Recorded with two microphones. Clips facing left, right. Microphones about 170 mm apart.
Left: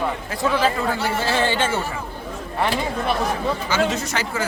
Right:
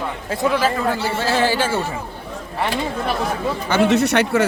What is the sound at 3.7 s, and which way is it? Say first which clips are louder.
Speech: right 10 dB; 65° right (ahead or behind).